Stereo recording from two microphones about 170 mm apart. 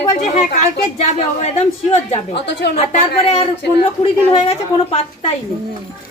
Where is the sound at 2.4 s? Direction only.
90° left.